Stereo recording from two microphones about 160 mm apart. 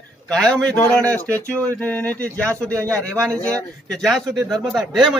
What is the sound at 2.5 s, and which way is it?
Speech, 20° right (ahead or behind).